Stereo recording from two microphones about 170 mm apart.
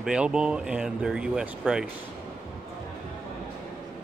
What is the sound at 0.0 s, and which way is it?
Speech, 5° right (ahead or behind).